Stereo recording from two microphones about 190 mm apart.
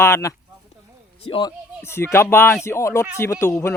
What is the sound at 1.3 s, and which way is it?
Speech, 25° left (ahead or behind).